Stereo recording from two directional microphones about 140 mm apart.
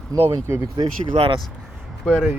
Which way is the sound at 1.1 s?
40° right (ahead or behind).